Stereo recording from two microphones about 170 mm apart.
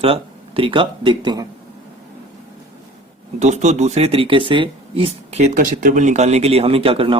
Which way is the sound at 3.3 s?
45° right (ahead or behind).